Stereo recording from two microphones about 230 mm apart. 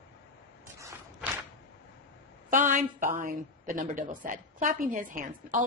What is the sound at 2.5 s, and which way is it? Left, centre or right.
A woman's voice, right.